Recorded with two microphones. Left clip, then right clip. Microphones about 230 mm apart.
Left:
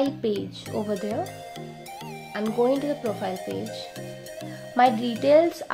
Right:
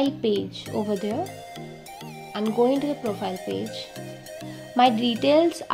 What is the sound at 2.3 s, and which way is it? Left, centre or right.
Speech, centre.